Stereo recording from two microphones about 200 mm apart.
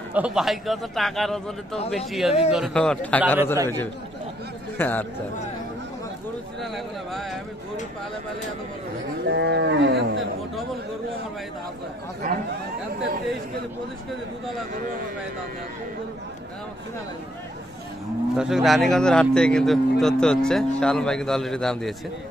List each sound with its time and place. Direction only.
0.1 s a man's voice: 5° right (ahead or behind)
6.6 s speech: centre (ahead or behind)
9.2 s speech: 60° right (ahead or behind)
18.3 s speech: centre (ahead or behind)